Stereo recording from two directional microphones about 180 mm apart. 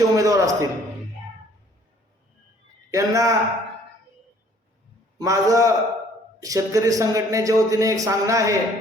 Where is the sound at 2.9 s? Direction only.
15° right (ahead or behind).